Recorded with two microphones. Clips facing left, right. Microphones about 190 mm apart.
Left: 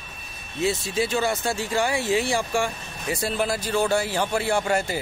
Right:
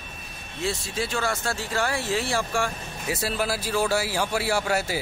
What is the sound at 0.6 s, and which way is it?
Speech, 20° left (ahead or behind).